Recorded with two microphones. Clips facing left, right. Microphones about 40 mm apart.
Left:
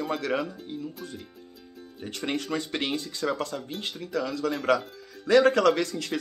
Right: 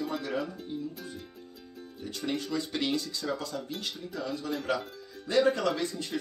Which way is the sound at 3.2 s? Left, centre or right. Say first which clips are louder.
Left 8 dB; left.